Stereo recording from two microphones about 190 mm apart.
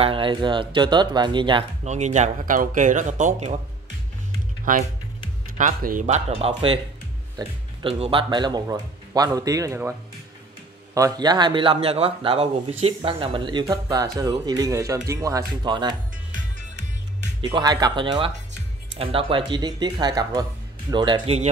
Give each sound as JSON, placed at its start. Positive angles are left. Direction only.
{"t": 0.0, "sound": "a man's voice", "side_deg": -25}
{"t": 1.9, "sound": "speech", "side_deg": -40}
{"t": 5.6, "sound": "a man's voice", "side_deg": -45}
{"t": 11.0, "sound": "a man's voice", "side_deg": -20}
{"t": 17.4, "sound": "a man's voice", "side_deg": -20}